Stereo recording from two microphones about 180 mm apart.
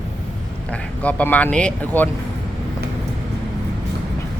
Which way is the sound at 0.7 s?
10° left (ahead or behind).